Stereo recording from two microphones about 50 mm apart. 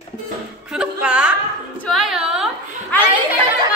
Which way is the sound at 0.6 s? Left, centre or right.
Centre.